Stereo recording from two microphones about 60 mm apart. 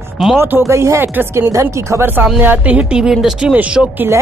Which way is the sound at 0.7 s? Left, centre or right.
Right.